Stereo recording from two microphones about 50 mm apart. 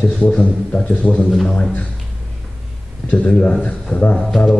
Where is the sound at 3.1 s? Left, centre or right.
Left.